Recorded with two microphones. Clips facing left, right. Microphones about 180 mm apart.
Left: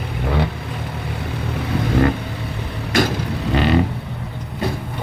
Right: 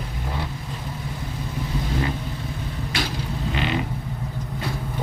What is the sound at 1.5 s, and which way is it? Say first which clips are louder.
Vehicle: left 8 dB; 70° left (ahead or behind).